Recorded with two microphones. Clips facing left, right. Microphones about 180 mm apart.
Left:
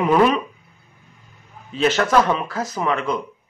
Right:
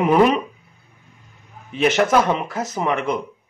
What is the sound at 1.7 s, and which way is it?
A man's voice, 20° right (ahead or behind).